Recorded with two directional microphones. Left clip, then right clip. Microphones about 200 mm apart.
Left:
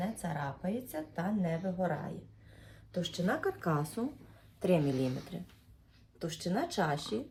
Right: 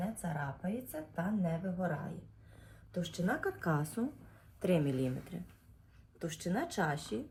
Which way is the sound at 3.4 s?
20° right (ahead or behind).